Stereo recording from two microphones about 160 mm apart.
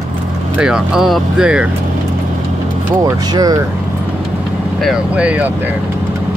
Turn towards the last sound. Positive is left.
turn(degrees=-10)  # may be behind; listen again after turning